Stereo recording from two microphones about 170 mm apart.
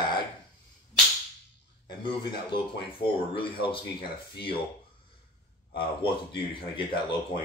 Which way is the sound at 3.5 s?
30° left (ahead or behind).